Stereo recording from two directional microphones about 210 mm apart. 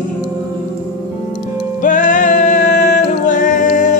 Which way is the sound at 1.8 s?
35° left (ahead or behind).